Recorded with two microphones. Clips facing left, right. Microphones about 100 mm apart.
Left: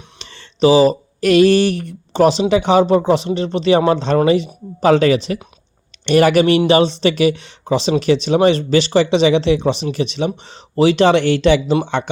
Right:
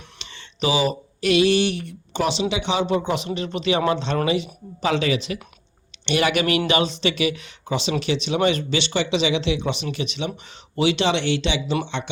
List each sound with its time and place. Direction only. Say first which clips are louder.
0.2 s speech: left 12 dB; 35° left (ahead or behind)